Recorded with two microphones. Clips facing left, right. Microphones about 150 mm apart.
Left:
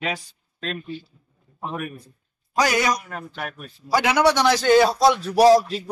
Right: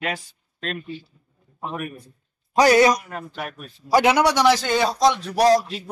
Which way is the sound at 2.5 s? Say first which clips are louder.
Right 6 dB; 25° right (ahead or behind).